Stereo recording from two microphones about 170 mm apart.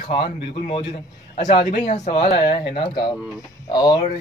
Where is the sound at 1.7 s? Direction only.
45° left (ahead or behind).